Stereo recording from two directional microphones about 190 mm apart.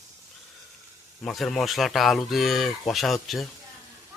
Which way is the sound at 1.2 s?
Centre (ahead or behind).